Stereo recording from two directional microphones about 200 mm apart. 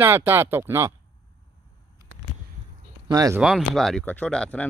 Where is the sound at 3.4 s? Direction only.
Centre (ahead or behind).